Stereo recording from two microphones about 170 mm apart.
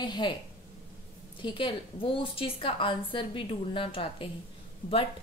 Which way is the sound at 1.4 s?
30° left (ahead or behind).